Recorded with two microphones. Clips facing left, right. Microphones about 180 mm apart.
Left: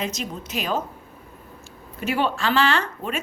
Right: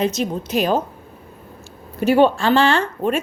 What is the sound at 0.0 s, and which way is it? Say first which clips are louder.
Speech: right 9 dB; 35° right (ahead or behind).